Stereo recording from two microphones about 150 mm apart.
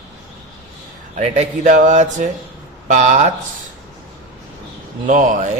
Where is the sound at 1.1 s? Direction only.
50° right (ahead or behind).